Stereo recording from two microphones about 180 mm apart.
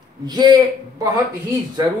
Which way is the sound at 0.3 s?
25° right (ahead or behind).